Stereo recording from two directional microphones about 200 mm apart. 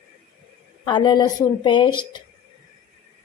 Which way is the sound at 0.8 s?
20° left (ahead or behind).